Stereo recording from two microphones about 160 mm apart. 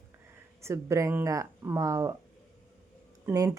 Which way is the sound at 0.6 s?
15° right (ahead or behind).